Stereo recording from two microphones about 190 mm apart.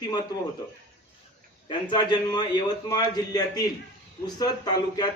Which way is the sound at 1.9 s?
25° left (ahead or behind).